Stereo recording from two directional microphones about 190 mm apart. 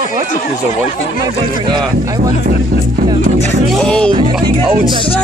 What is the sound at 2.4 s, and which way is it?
Speech, 45° right (ahead or behind).